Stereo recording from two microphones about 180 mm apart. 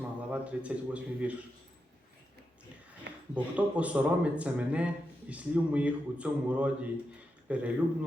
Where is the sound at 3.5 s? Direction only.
5° right (ahead or behind).